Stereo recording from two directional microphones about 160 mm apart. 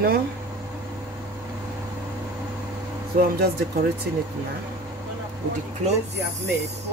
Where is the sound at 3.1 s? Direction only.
55° right (ahead or behind).